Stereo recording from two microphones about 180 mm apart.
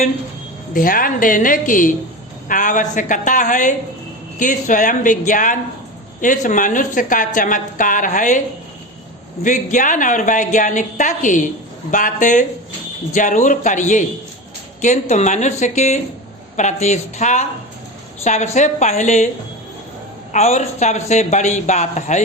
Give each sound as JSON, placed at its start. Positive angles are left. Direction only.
{"t": 0.7, "sound": "a woman's voice", "side_deg": 50}
{"t": 9.4, "sound": "a woman's voice", "side_deg": 45}
{"t": 20.3, "sound": "speech", "side_deg": 40}